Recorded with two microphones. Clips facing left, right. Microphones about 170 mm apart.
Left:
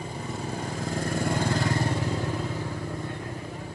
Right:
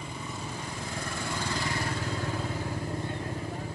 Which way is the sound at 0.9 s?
45° left (ahead or behind).